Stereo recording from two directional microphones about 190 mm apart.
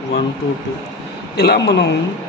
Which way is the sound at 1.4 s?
60° left (ahead or behind).